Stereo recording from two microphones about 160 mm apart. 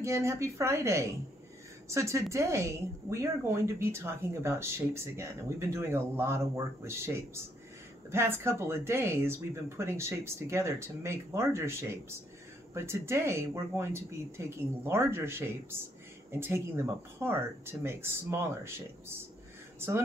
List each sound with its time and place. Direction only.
0.0 s speech: 15° right (ahead or behind)